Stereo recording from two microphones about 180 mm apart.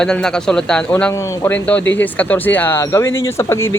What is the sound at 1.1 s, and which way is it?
Speech, 15° left (ahead or behind).